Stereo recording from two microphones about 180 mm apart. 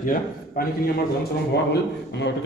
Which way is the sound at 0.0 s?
50° left (ahead or behind).